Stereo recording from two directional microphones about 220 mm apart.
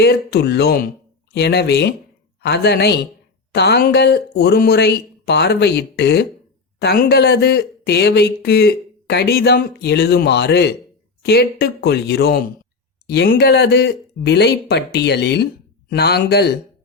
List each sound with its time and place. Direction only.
0.0 s speech: 50° left (ahead or behind)